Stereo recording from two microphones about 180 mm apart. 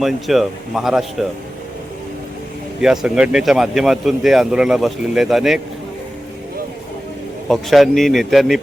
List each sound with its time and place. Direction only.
0.0 s speech: centre (ahead or behind)
2.8 s speech: 5° right (ahead or behind)
7.4 s speech: centre (ahead or behind)